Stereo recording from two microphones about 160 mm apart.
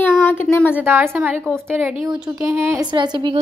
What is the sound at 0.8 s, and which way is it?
A woman's voice, 15° right (ahead or behind).